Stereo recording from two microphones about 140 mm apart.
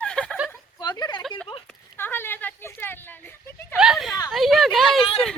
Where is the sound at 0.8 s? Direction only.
30° left (ahead or behind).